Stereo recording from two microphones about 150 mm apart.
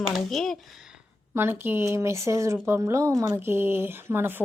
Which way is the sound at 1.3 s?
15° right (ahead or behind).